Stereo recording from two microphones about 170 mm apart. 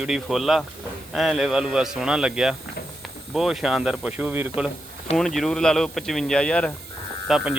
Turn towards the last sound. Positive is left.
turn(degrees=-5)  # may be behind; listen again after turning